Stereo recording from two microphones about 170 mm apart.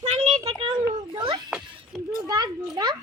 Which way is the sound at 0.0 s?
35° right (ahead or behind).